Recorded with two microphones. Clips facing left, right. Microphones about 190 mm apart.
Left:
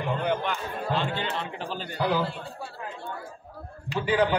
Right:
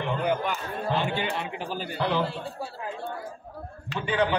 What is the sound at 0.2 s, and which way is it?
A man's voice, 5° right (ahead or behind).